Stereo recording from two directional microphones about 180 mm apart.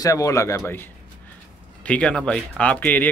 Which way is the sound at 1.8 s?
5° left (ahead or behind).